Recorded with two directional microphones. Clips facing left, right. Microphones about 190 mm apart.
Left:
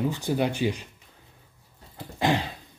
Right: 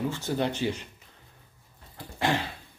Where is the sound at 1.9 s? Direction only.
15° left (ahead or behind).